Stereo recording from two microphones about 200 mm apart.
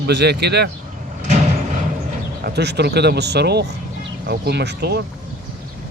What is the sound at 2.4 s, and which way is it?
Speech, 55° right (ahead or behind).